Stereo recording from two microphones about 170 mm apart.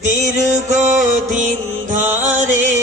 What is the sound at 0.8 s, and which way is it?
Music, 45° right (ahead or behind).